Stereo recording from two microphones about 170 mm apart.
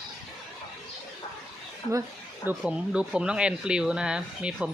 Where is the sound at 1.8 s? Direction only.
35° left (ahead or behind).